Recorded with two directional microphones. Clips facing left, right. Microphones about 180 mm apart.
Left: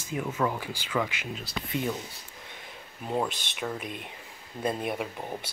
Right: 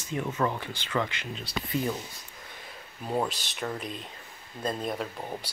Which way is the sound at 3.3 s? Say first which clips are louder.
Even; 55° left (ahead or behind).